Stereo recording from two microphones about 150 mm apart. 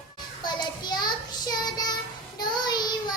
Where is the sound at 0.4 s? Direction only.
30° left (ahead or behind).